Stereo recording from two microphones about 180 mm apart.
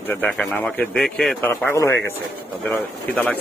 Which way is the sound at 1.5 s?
15° left (ahead or behind).